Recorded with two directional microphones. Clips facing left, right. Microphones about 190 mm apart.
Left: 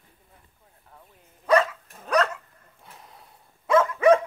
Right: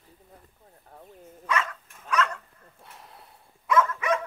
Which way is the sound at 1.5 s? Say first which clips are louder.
Left 9 dB; 35° left (ahead or behind).